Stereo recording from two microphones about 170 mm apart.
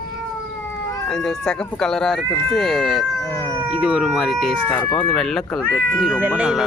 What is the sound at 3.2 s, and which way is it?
Cat, 20° right (ahead or behind).